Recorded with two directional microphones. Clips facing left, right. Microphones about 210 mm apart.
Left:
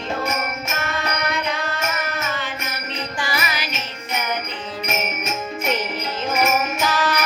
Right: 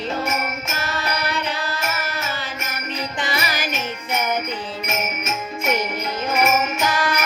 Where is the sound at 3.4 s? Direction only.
45° right (ahead or behind).